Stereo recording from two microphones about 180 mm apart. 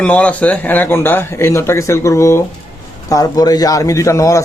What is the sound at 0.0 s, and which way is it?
A man's voice, 5° left (ahead or behind).